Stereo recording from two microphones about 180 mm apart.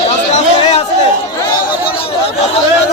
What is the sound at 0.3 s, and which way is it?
Chatter, 35° left (ahead or behind).